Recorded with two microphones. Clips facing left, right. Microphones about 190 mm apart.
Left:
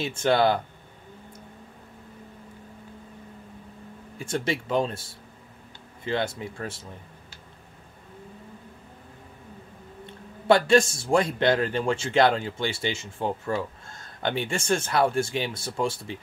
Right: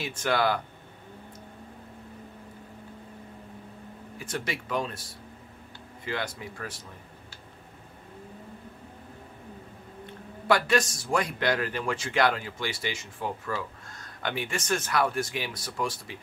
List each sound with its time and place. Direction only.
0.0 s a man's voice: 25° left (ahead or behind)
4.2 s a man's voice: 25° left (ahead or behind)
10.4 s a man's voice: 25° left (ahead or behind)